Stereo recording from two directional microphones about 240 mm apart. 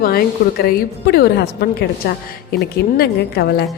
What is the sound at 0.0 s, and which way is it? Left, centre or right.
A woman's voice, left.